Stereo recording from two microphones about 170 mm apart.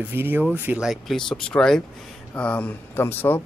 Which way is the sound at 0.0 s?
10° right (ahead or behind).